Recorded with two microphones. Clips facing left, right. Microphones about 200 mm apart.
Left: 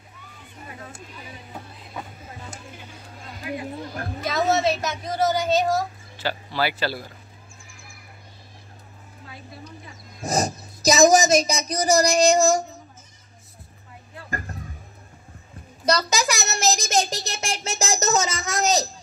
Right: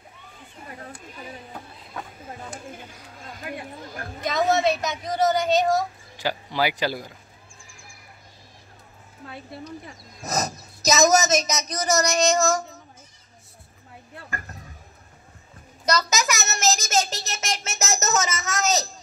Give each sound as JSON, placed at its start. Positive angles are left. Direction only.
{"t": 4.5, "sound": "a woman's voice", "side_deg": 0}
{"t": 6.1, "sound": "speech", "side_deg": -15}
{"t": 9.2, "sound": "speech", "side_deg": -55}
{"t": 10.2, "sound": "speech", "side_deg": 30}
{"t": 15.8, "sound": "a child's voice", "side_deg": 30}